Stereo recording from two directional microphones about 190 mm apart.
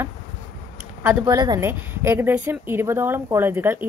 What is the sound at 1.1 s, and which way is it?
Speech, 20° right (ahead or behind).